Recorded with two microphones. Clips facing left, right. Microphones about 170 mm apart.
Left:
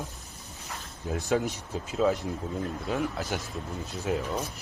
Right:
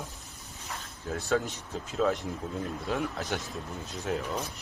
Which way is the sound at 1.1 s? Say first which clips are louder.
Left 2 dB; 15° left (ahead or behind).